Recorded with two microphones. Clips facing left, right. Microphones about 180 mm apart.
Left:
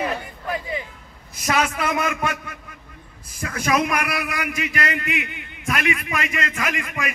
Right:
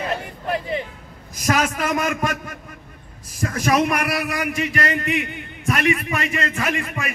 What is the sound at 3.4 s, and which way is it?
A man's voice, 35° right (ahead or behind).